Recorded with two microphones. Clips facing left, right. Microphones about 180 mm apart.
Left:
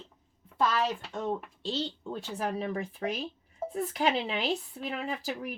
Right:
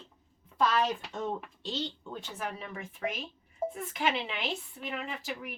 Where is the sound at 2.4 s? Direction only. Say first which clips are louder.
Left 8 dB; 35° left (ahead or behind).